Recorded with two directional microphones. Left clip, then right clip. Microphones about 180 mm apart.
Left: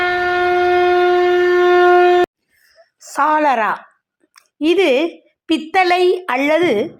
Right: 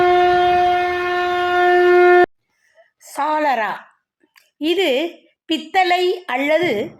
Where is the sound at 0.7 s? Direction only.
15° right (ahead or behind).